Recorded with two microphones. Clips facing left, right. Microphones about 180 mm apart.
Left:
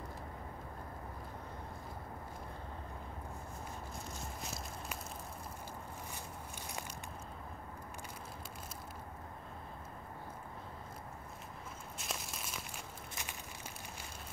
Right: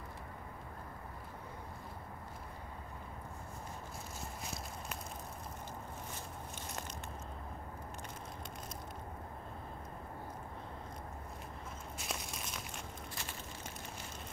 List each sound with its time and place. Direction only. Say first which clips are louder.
12.0 s crumpling: right 1 dB; centre (ahead or behind)